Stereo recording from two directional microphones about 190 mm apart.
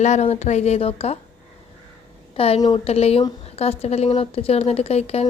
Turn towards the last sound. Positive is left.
turn(degrees=35)  # may be behind; listen again after turning